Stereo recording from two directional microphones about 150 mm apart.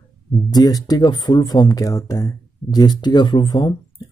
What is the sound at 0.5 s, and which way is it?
Speech, 25° left (ahead or behind).